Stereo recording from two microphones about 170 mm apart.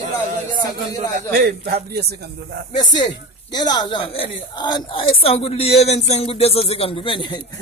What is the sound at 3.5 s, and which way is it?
Speech, 25° left (ahead or behind).